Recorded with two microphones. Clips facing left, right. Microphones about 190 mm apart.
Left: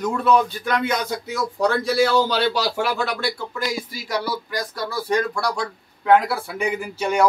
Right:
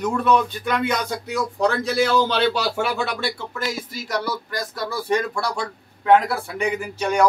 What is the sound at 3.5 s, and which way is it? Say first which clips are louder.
Speech: left 1 dB; centre (ahead or behind).